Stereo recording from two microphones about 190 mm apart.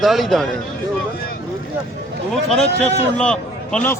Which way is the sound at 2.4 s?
5° left (ahead or behind).